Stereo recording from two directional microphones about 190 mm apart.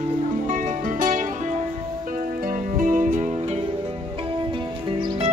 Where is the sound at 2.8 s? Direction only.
45° right (ahead or behind).